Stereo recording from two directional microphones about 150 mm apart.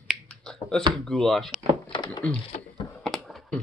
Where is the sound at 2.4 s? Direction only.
35° left (ahead or behind).